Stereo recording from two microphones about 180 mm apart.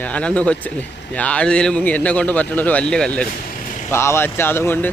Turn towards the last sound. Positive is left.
turn(degrees=10)  # may be behind; listen again after turning